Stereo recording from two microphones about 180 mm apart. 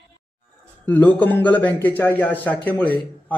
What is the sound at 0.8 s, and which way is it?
A man's voice, 10° left (ahead or behind).